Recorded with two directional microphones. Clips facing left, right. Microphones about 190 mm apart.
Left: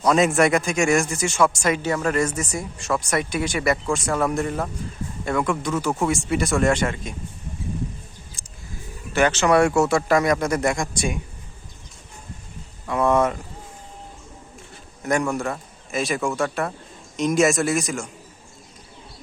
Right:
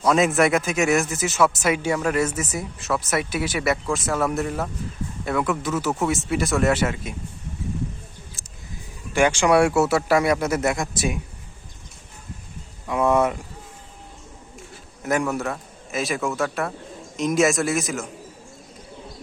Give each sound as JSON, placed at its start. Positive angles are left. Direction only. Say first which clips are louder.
{"t": 0.0, "sound": "speech", "louder": "left 1 dB", "side_deg": 0}
{"t": 8.4, "sound": "a sound", "louder": "right 1 dB", "side_deg": -5}
{"t": 9.1, "sound": "a man's voice", "louder": "even", "side_deg": -10}
{"t": 12.9, "sound": "speech", "louder": "even", "side_deg": -10}
{"t": 15.0, "sound": "speech", "louder": "left 1 dB", "side_deg": -5}